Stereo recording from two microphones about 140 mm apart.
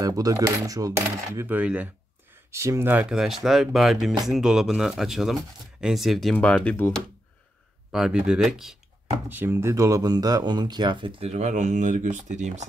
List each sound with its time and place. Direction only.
0.0 s cutlery: 25° right (ahead or behind)
0.9 s coin: 20° right (ahead or behind)
2.5 s speech: 20° right (ahead or behind); by 7.0 s 5° left (ahead or behind)
7.9 s speech: 5° right (ahead or behind)
9.3 s speech: 15° right (ahead or behind); by 12.6 s 60° right (ahead or behind)